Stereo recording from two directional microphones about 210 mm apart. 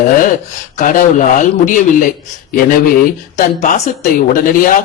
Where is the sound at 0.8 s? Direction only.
35° left (ahead or behind).